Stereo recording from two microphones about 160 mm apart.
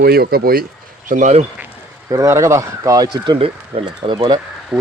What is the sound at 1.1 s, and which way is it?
Speech, 50° right (ahead or behind).